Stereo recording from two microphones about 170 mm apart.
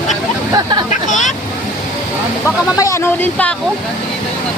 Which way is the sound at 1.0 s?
45° left (ahead or behind).